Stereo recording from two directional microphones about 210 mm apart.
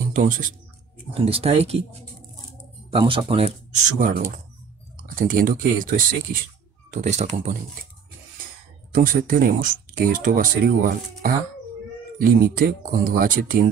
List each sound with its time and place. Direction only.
0.1 s speech: 40° right (ahead or behind)
1.1 s speech: 30° right (ahead or behind)
8.9 s speech: 40° right (ahead or behind)